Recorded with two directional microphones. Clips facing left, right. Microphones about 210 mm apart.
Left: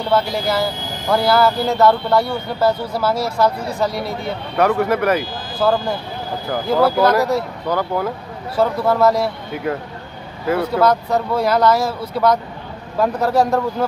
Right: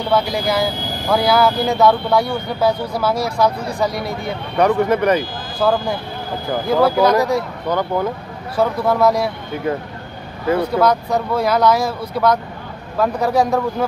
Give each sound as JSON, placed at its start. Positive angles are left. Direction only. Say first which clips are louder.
{"t": 0.1, "sound": "speech", "louder": "even", "side_deg": 5}
{"t": 10.5, "sound": "speech", "louder": "even", "side_deg": 5}